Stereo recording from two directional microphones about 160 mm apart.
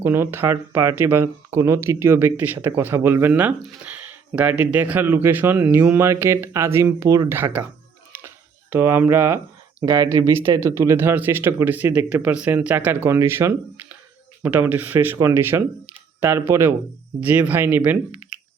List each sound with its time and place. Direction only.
0.0 s speech: 15° right (ahead or behind)
8.7 s speech: 15° right (ahead or behind)